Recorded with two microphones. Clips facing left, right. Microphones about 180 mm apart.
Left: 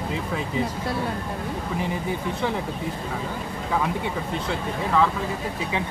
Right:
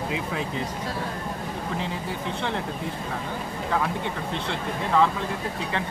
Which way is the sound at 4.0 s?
5° left (ahead or behind).